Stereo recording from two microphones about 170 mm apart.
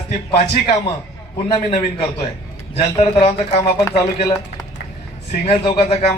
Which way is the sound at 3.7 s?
20° left (ahead or behind).